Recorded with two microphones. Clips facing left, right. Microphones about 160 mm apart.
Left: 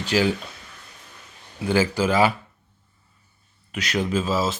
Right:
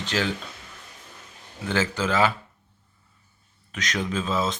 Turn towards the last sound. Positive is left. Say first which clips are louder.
# left 3 dB
turn(degrees=5)  # may be behind; listen again after turning